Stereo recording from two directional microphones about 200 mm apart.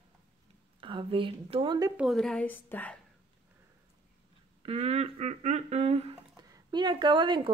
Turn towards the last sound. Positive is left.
turn(degrees=-25)  # may be behind; listen again after turning